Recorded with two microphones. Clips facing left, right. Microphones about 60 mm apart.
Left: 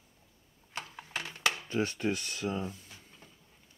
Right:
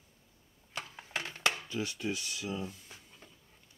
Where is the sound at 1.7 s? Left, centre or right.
Left.